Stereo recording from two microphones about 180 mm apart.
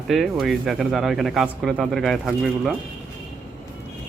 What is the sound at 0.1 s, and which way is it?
Speech, centre (ahead or behind).